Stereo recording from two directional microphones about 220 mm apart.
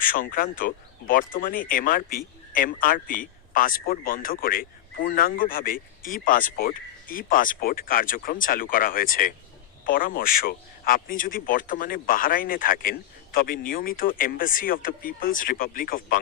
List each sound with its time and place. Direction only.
0.0 s speech: 40° left (ahead or behind)